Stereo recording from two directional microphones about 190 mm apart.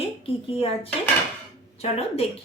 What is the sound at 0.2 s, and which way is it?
Speech, 30° left (ahead or behind).